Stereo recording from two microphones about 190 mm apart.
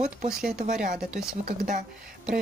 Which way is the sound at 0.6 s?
40° right (ahead or behind).